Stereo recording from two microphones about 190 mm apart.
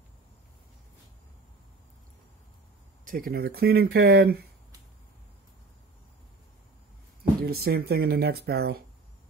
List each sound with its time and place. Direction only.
3.1 s speech: 50° right (ahead or behind)
7.4 s speech: 55° right (ahead or behind)